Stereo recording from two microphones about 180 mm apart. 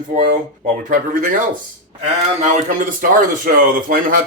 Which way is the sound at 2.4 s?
45° right (ahead or behind).